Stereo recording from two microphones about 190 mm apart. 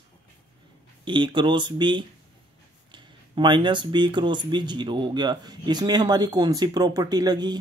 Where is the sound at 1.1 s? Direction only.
25° right (ahead or behind).